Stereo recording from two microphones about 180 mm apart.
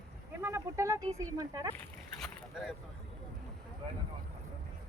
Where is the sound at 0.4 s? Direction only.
15° right (ahead or behind).